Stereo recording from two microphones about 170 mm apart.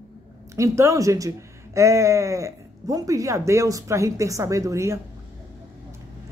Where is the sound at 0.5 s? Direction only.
20° right (ahead or behind).